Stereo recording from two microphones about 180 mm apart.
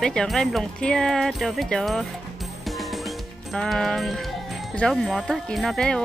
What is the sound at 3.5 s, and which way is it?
Speech, centre (ahead or behind).